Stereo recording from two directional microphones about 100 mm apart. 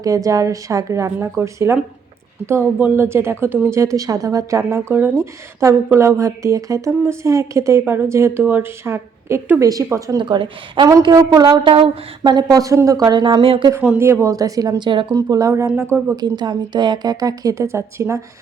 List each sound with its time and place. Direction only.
0.0 s a woman's voice: 35° right (ahead or behind)
3.9 s a woman's voice: 35° right (ahead or behind)
10.2 s a woman's voice: 50° right (ahead or behind)
11.0 s a woman's voice: 40° right (ahead or behind)
11.6 s speech: 65° right (ahead or behind)
12.2 s a woman's voice: 40° right (ahead or behind); by 13.7 s 60° right (ahead or behind)
14.0 s a woman's voice: 25° right (ahead or behind); by 15.0 s 50° right (ahead or behind)
15.1 s a woman's voice: 35° right (ahead or behind)
16.2 s a woman's voice: 45° right (ahead or behind); by 18.2 s 25° right (ahead or behind)